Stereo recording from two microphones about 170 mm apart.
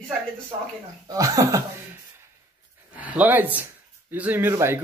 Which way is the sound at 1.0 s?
20° right (ahead or behind).